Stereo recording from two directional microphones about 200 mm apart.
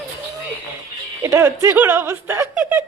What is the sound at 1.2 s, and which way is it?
Speech, 15° right (ahead or behind).